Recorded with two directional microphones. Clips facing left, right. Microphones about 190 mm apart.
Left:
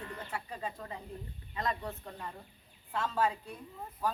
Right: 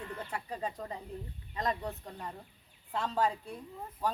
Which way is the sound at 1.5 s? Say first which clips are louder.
Right 2 dB; 35° right (ahead or behind).